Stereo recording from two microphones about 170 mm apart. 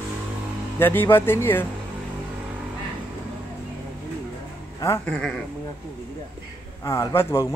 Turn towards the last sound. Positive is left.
turn(degrees=15)  # may be behind; listen again after turning